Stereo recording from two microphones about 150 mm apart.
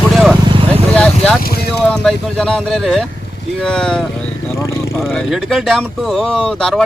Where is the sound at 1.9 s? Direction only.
5° left (ahead or behind).